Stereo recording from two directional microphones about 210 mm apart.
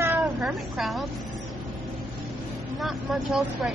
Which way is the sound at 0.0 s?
15° right (ahead or behind).